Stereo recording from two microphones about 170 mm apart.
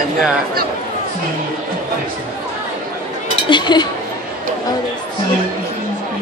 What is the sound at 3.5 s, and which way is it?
Speech, 25° left (ahead or behind).